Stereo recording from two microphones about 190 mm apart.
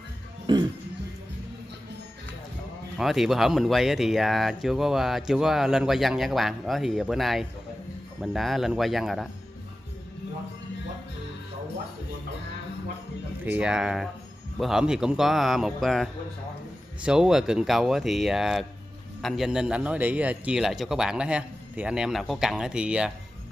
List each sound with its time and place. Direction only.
0.5 s speech: 25° right (ahead or behind)
3.0 s speech: centre (ahead or behind)
13.5 s speech: 5° right (ahead or behind)